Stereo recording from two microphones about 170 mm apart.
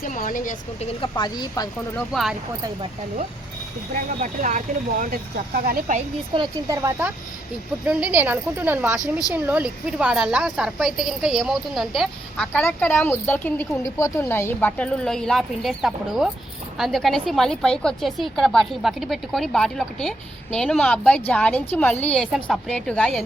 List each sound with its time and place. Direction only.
0.0 s speech: 50° left (ahead or behind)
1.0 s speech: 25° left (ahead or behind)
2.0 s a woman's voice: centre (ahead or behind)
4.2 s speech: 45° right (ahead or behind)
6.3 s a woman's voice: 25° right (ahead or behind)
7.9 s a woman's voice: 10° right (ahead or behind)
12.6 s a woman's voice: 10° left (ahead or behind)